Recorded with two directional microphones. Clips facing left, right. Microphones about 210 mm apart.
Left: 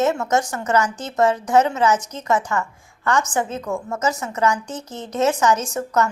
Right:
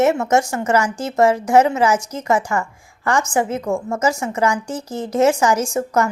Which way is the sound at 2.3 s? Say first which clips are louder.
Right 2 dB; 30° right (ahead or behind).